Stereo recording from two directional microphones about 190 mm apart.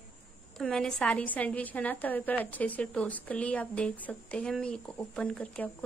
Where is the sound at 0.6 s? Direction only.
5° left (ahead or behind).